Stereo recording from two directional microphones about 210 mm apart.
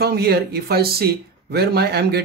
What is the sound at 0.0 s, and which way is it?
Speech, 50° right (ahead or behind).